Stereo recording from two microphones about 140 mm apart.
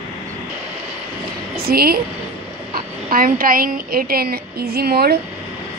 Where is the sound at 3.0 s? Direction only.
90° right.